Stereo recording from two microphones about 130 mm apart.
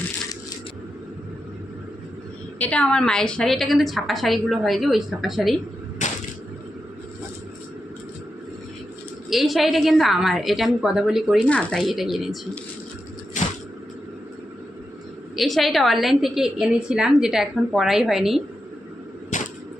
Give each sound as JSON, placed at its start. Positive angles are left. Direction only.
{"t": 2.6, "sound": "a woman's voice", "side_deg": 10}
{"t": 9.3, "sound": "a woman's voice", "side_deg": 0}
{"t": 13.4, "sound": "a sound", "side_deg": 70}
{"t": 15.4, "sound": "a woman's voice", "side_deg": 0}
{"t": 19.3, "sound": "arrow", "side_deg": 70}